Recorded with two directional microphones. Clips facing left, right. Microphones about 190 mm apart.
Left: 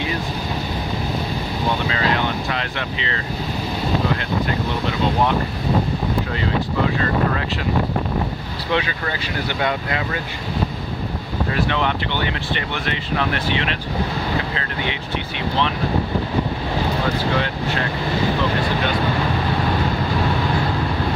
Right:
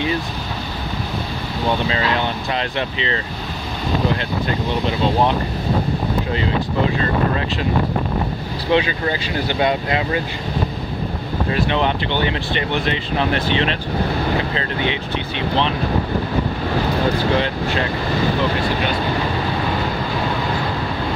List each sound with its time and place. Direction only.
2.5 s speech: 25° right (ahead or behind)
8.7 s speech: 25° right (ahead or behind)
11.5 s speech: 20° right (ahead or behind)